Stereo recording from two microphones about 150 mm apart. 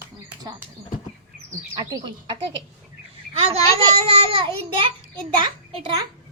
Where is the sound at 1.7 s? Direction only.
25° right (ahead or behind).